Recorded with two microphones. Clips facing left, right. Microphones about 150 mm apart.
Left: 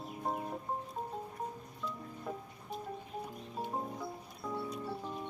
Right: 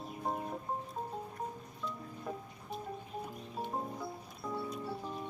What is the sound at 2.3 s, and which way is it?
Music, centre (ahead or behind).